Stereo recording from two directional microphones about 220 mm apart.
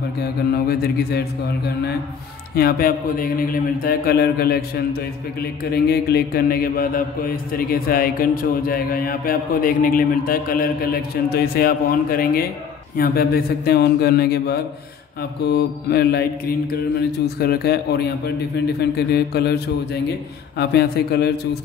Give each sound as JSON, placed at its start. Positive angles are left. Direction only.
{"t": 0.2, "sound": "a man's voice", "side_deg": 45}